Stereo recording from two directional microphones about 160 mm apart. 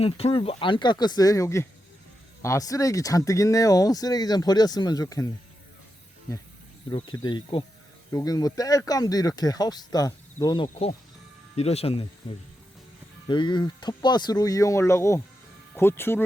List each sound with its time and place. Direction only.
0.0 s speech: 35° left (ahead or behind); by 5.3 s 20° left (ahead or behind)
7.2 s speech: 30° left (ahead or behind)
10.5 s speech: 35° left (ahead or behind)
13.2 s speech: 30° left (ahead or behind); by 16.2 s 15° left (ahead or behind)